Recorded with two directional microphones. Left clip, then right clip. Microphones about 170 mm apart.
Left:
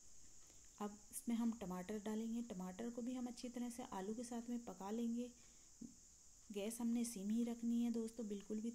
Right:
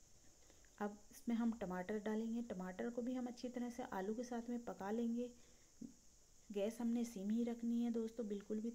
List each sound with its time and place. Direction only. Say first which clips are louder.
0.7 s cricket: right 3 dB; 10° left (ahead or behind)
6.5 s cricket: right 3 dB; 10° left (ahead or behind)